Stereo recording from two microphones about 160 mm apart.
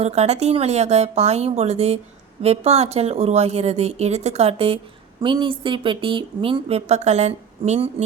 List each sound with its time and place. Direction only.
0.0 s a woman's voice: 40° right (ahead or behind)